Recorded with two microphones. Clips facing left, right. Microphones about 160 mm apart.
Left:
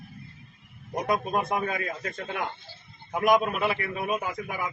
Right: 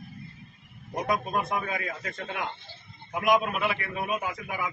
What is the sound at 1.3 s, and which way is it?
Speech, 40° left (ahead or behind).